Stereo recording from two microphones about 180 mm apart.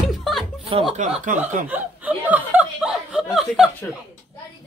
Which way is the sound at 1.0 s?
45° right (ahead or behind).